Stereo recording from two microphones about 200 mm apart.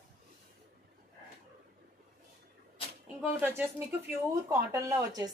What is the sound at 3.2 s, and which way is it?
A woman's voice, 10° right (ahead or behind).